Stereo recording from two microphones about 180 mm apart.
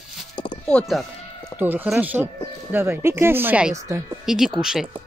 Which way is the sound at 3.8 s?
15° right (ahead or behind).